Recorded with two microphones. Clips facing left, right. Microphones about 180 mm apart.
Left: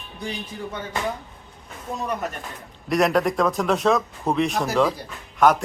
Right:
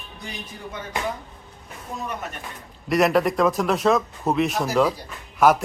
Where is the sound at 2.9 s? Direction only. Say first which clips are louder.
Right 1 dB; centre (ahead or behind).